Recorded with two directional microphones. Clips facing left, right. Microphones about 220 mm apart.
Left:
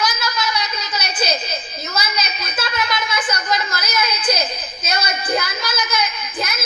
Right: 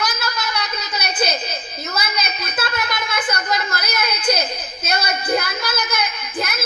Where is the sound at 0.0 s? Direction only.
55° right (ahead or behind).